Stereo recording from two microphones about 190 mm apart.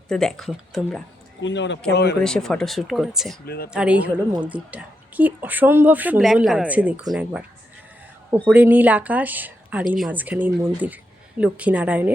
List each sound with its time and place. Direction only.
0.1 s speech: 5° left (ahead or behind)
1.4 s speech: 70° left (ahead or behind)
1.9 s speech: 60° left (ahead or behind)
2.2 s speech: 5° left (ahead or behind)
3.4 s speech: 55° left (ahead or behind)
3.7 s speech: 5° right (ahead or behind)
8.5 s speech: 10° right (ahead or behind)